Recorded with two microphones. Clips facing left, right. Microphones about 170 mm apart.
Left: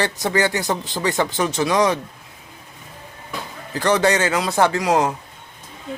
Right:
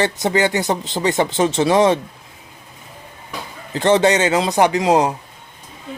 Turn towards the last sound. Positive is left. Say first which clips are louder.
# right 3 dB
turn(degrees=-20)  # may be behind; listen again after turning